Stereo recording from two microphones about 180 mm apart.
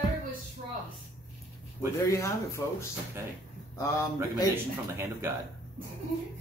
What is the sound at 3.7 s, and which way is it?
Speech, 20° left (ahead or behind).